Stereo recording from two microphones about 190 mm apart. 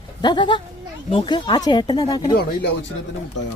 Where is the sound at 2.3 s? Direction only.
60° left (ahead or behind).